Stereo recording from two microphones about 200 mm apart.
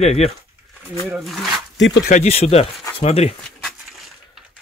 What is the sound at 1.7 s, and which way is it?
Speech, 65° left (ahead or behind).